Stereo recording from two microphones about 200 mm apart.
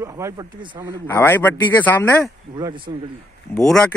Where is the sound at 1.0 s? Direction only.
10° left (ahead or behind).